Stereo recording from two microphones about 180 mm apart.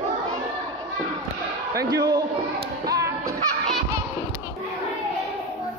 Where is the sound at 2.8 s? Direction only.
20° right (ahead or behind).